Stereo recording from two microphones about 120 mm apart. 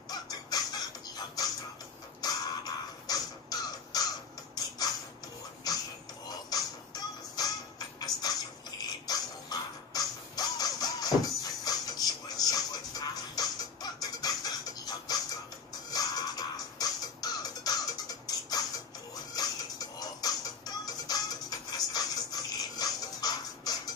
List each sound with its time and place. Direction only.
0.1 s music: 35° left (ahead or behind)
4.6 s mechanisms: 35° left (ahead or behind)
5.7 s a sound: 30° left (ahead or behind)
6.5 s music: 35° left (ahead or behind)
8.0 s a sound: 35° left (ahead or behind)
9.0 s music: 35° left (ahead or behind)